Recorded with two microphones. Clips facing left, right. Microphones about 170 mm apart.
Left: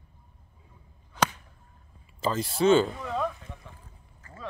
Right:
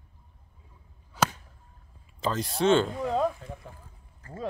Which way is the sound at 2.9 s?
35° right (ahead or behind).